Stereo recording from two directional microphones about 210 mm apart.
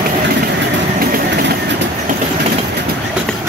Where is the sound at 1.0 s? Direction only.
45° right (ahead or behind).